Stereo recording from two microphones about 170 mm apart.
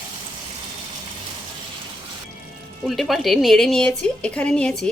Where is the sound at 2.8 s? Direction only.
Centre (ahead or behind).